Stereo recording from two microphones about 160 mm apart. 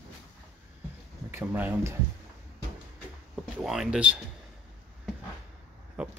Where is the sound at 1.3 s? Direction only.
15° right (ahead or behind).